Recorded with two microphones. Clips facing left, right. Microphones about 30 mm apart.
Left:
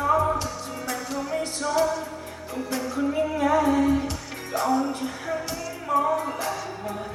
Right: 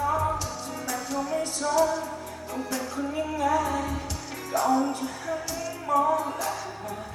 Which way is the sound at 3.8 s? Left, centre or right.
Centre.